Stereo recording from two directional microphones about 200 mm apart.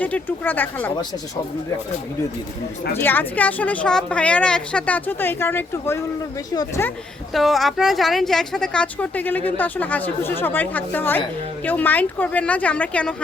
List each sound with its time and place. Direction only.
0.0 s a woman's voice: 10° left (ahead or behind)
2.9 s a woman's voice: 10° left (ahead or behind)
7.3 s a woman's voice: centre (ahead or behind)